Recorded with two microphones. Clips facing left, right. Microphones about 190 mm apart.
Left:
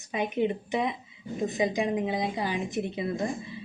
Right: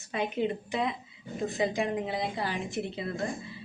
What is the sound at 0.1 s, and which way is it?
A woman's voice, 15° left (ahead or behind).